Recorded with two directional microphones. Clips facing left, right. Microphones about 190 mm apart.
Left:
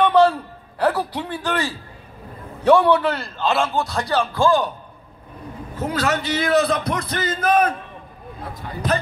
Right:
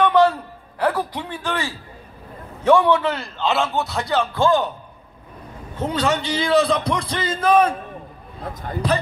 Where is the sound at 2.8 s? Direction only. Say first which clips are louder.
Left 1 dB; 15° right (ahead or behind).